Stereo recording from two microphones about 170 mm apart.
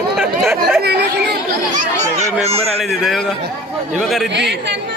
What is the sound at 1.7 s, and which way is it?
Speech, 45° right (ahead or behind).